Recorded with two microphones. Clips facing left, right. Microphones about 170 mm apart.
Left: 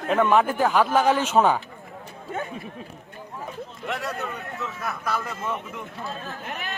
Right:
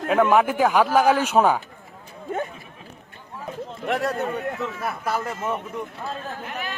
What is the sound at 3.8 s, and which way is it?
Speech, 45° right (ahead or behind).